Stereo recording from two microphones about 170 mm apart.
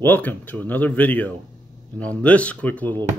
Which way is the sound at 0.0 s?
10° left (ahead or behind).